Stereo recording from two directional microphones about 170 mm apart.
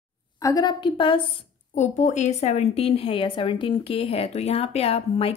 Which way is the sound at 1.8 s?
45° left (ahead or behind).